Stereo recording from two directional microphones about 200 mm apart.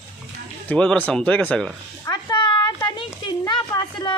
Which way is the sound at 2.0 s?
20° left (ahead or behind).